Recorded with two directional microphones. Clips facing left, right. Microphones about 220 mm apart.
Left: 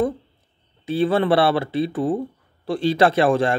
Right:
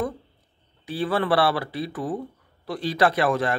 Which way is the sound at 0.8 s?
25° left (ahead or behind).